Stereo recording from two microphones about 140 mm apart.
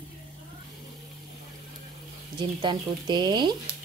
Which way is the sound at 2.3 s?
35° right (ahead or behind).